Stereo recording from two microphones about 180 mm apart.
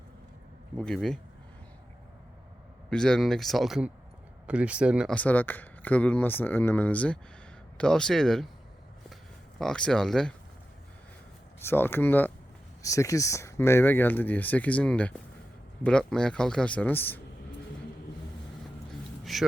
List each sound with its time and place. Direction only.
0.8 s a man's voice: centre (ahead or behind)
2.9 s a man's voice: 5° left (ahead or behind)
5.1 s a man's voice: 10° left (ahead or behind)
9.6 s a man's voice: 5° left (ahead or behind)
11.6 s a man's voice: 10° left (ahead or behind)
19.2 s a sound: centre (ahead or behind)